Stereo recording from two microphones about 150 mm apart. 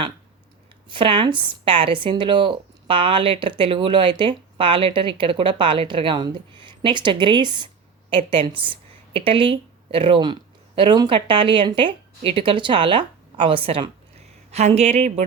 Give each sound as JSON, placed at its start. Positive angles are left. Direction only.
{"t": 0.9, "sound": "a woman's voice", "side_deg": -35}